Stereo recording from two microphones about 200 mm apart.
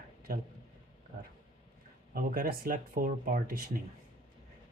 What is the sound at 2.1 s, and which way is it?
Speech, 50° right (ahead or behind).